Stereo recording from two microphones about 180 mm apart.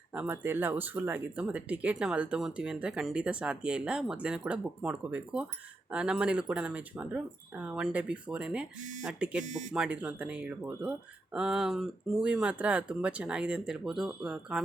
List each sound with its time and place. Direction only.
0.1 s speech: 10° right (ahead or behind)
9.4 s speech: 45° right (ahead or behind)
9.7 s speech: 5° right (ahead or behind)